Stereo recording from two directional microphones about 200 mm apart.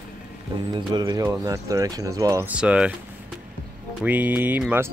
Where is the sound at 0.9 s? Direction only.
20° right (ahead or behind).